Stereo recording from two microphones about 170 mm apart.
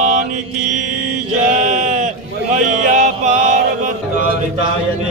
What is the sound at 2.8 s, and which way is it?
Music, 45° right (ahead or behind).